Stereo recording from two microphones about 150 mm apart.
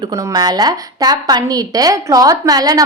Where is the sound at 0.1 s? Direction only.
25° right (ahead or behind).